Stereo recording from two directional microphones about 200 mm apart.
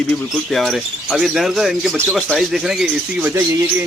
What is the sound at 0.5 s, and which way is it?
Speech, centre (ahead or behind).